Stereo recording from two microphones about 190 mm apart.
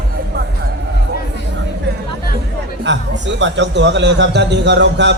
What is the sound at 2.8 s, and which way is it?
Speech, 70° right (ahead or behind).